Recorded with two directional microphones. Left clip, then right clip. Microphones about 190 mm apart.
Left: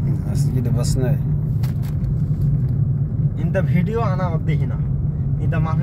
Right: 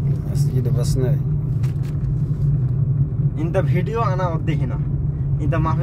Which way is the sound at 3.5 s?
60° right (ahead or behind).